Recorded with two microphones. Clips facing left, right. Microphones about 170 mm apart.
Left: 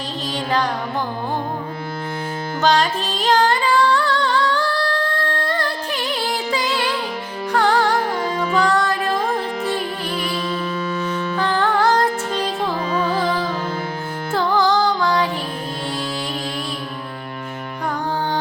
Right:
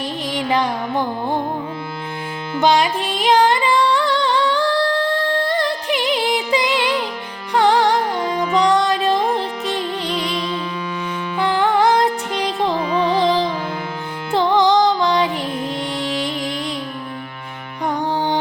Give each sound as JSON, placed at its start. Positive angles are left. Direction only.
{"t": 0.3, "sound": "carnatic music", "side_deg": -15}
{"t": 2.6, "sound": "music", "side_deg": -15}